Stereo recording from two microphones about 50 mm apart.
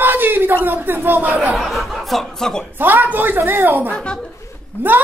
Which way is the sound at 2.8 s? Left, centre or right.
Right.